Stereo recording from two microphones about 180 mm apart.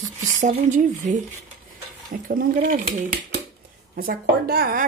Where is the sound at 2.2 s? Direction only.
50° right (ahead or behind).